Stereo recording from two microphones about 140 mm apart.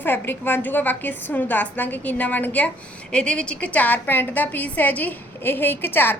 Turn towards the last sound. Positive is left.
turn(degrees=15)  # may be behind; listen again after turning